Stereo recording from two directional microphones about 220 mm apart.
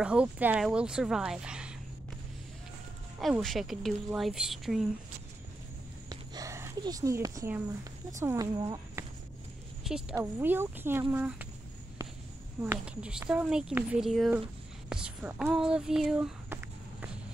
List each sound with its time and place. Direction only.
0.0 s speech: 5° right (ahead or behind)
3.2 s speech: centre (ahead or behind)
6.0 s a sound: 15° right (ahead or behind)
8.2 s speech: 15° right (ahead or behind)
9.8 s a woman's voice: 5° right (ahead or behind)
12.6 s speech: 5° right (ahead or behind)